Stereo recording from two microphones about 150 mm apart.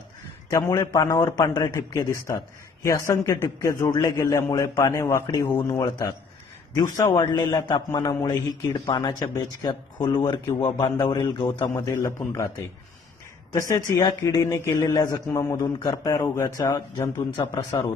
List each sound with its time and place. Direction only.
0.5 s a man's voice: 25° left (ahead or behind)
7.2 s a man's voice: 30° left (ahead or behind)
13.6 s a man's voice: 20° left (ahead or behind)
17.6 s a man's voice: 20° left (ahead or behind)